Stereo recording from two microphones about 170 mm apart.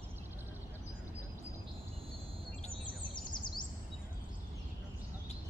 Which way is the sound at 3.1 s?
25° left (ahead or behind).